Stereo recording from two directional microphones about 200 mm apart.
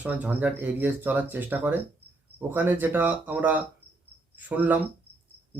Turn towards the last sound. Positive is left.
turn(degrees=-10)  # may be behind; listen again after turning